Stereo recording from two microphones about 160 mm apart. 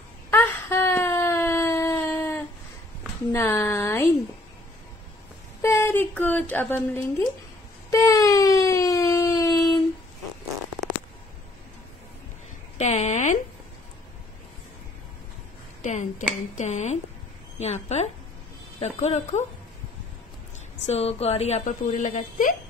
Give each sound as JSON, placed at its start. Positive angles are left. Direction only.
{"t": 0.3, "sound": "wail", "side_deg": 10}
{"t": 3.3, "sound": "a woman's voice", "side_deg": 15}
{"t": 5.6, "sound": "speech", "side_deg": 15}
{"t": 7.9, "sound": "a sound", "side_deg": 20}
{"t": 12.7, "sound": "a sound", "side_deg": 45}
{"t": 15.8, "sound": "a woman's voice", "side_deg": 50}
{"t": 20.8, "sound": "a woman's voice", "side_deg": 40}